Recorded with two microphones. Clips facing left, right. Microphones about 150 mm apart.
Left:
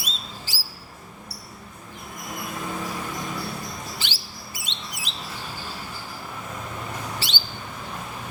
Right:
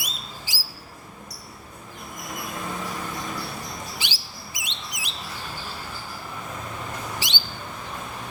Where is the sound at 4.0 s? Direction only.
15° right (ahead or behind).